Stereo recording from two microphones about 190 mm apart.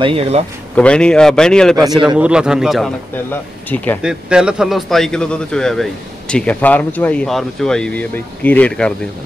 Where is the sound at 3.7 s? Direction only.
30° right (ahead or behind).